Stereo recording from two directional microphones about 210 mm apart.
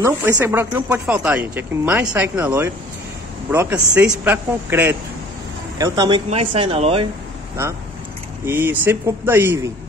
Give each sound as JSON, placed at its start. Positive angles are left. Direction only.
{"t": 0.0, "sound": "speech", "side_deg": -10}
{"t": 8.5, "sound": "speech", "side_deg": -10}